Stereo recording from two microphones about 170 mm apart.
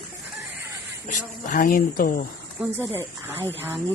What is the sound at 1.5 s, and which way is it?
Speech, 55° left (ahead or behind).